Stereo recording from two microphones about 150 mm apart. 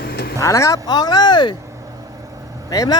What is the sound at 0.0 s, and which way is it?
Vehicle, 85° left.